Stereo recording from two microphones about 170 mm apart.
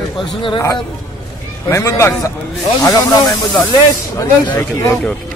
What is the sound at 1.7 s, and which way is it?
A man's voice, 15° left (ahead or behind).